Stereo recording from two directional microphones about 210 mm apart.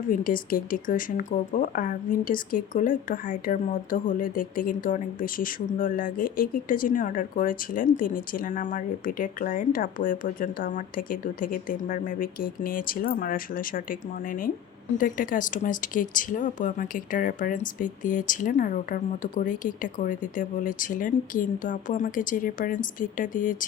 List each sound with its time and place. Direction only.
0.1 s speech: 40° left (ahead or behind)